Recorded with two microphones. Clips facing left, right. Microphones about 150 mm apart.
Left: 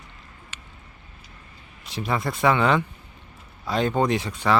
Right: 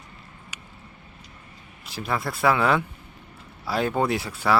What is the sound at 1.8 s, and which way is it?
Speech, centre (ahead or behind).